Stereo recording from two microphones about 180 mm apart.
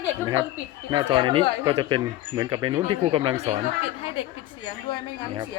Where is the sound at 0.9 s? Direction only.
25° right (ahead or behind).